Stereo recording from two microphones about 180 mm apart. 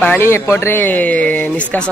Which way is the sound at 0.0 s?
10° left (ahead or behind).